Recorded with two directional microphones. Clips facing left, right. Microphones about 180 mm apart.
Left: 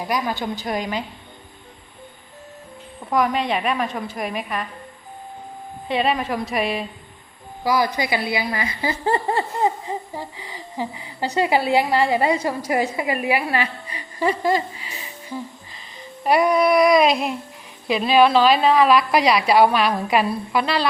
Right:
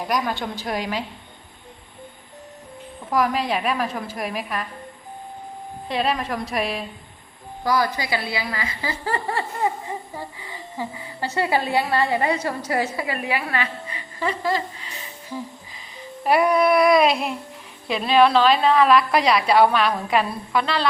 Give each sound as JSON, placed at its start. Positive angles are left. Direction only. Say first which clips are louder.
{"t": 0.0, "sound": "a woman's voice", "louder": "even", "side_deg": 0}
{"t": 3.1, "sound": "a woman's voice", "louder": "left 1 dB", "side_deg": 0}
{"t": 5.9, "sound": "a woman's voice", "louder": "left 2 dB", "side_deg": 0}
{"t": 7.6, "sound": "speech", "louder": "left 2 dB", "side_deg": 10}
{"t": 15.7, "sound": "child singing", "louder": "right 1 dB", "side_deg": -5}
{"t": 17.8, "sound": "a woman's voice", "louder": "left 1 dB", "side_deg": 5}